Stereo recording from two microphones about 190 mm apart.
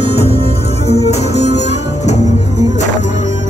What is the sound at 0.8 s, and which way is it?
Music, 35° left (ahead or behind).